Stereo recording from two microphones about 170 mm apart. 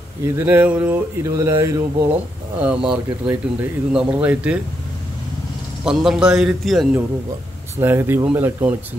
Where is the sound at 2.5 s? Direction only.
5° right (ahead or behind).